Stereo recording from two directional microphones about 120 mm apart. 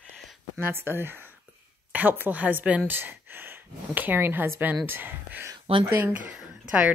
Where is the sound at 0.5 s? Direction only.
20° right (ahead or behind).